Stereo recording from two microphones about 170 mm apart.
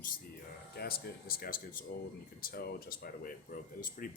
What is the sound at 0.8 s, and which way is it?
Speech, 65° left (ahead or behind).